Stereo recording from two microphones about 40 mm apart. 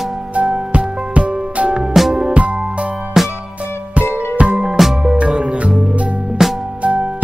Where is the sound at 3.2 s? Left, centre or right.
Centre.